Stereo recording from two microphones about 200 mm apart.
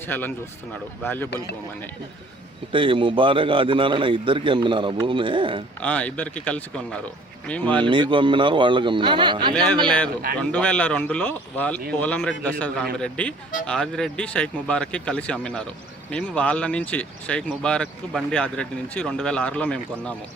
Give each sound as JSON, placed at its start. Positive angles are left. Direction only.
{"t": 0.1, "sound": "speech", "side_deg": 10}
{"t": 2.7, "sound": "a man's voice", "side_deg": -25}
{"t": 5.8, "sound": "speech", "side_deg": 5}
{"t": 8.1, "sound": "a man's voice", "side_deg": -25}
{"t": 10.5, "sound": "speech", "side_deg": 5}